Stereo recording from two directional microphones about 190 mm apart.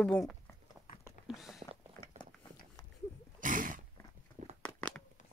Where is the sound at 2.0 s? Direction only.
45° right (ahead or behind).